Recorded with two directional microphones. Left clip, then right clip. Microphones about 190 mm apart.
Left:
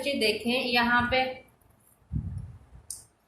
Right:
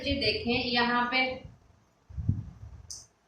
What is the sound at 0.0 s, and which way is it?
A woman's voice, 55° left (ahead or behind).